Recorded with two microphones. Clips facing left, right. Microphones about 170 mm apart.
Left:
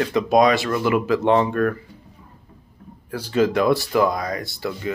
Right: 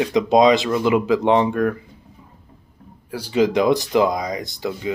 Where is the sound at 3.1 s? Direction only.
15° right (ahead or behind).